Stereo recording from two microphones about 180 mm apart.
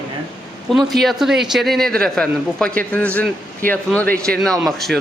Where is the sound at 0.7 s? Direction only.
Centre (ahead or behind).